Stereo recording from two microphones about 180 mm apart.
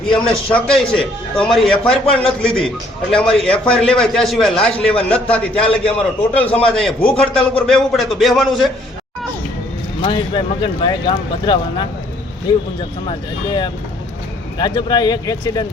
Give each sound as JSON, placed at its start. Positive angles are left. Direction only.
{"t": 0.3, "sound": "a man's voice", "side_deg": 5}
{"t": 10.0, "sound": "speech", "side_deg": 30}
{"t": 13.1, "sound": "speech", "side_deg": 25}